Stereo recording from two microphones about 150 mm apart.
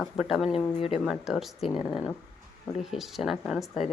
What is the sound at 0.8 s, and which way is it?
Speech, 40° left (ahead or behind).